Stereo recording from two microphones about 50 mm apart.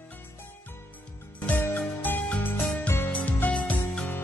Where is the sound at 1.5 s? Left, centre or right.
Left.